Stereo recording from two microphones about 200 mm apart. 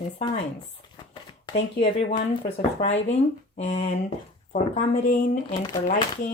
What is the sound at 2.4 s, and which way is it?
Speech, 35° left (ahead or behind).